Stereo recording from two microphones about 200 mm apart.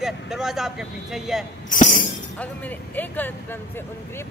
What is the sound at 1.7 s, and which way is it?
Music, 40° left (ahead or behind).